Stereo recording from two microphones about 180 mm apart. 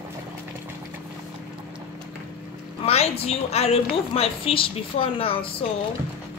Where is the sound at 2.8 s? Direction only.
35° left (ahead or behind).